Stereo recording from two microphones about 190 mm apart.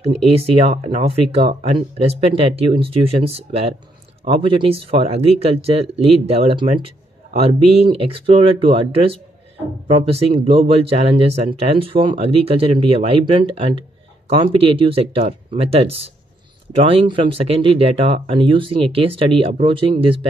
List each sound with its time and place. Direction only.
0.0 s speech: 35° right (ahead or behind)